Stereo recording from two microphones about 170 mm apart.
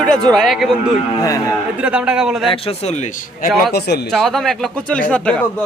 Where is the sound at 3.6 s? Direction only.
70° left (ahead or behind).